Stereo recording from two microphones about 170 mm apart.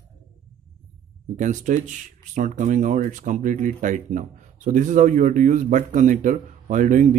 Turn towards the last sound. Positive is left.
turn(degrees=-50)  # may be behind; listen again after turning